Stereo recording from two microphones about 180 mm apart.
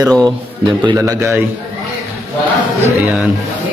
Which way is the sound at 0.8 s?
10° right (ahead or behind).